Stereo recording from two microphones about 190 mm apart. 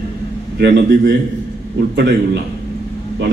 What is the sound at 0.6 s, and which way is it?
Speech, 60° right (ahead or behind).